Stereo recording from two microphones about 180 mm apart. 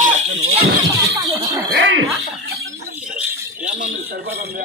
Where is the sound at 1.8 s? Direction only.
70° right (ahead or behind).